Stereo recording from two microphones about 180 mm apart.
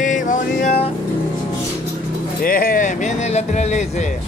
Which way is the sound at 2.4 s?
55° left (ahead or behind).